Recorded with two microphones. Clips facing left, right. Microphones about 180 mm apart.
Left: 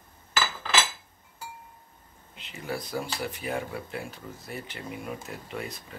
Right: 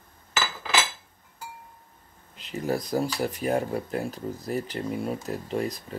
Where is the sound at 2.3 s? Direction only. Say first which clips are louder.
Right 7 dB; 40° right (ahead or behind).